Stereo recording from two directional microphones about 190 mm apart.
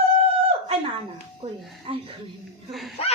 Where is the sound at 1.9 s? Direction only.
25° right (ahead or behind).